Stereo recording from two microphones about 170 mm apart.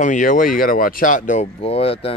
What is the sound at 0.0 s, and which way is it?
Speech, 50° left (ahead or behind).